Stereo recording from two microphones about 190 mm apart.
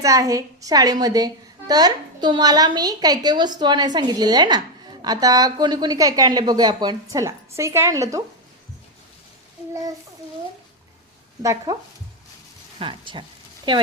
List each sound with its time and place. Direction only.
0.0 s a woman's voice: 15° right (ahead or behind)
11.4 s a woman's voice: 20° right (ahead or behind)
12.8 s a woman's voice: 25° right (ahead or behind)